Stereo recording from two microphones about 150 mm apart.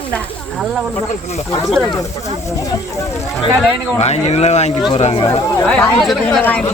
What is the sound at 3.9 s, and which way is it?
Speech, 45° left (ahead or behind).